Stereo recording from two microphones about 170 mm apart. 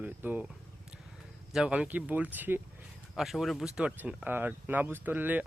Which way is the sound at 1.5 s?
5° right (ahead or behind).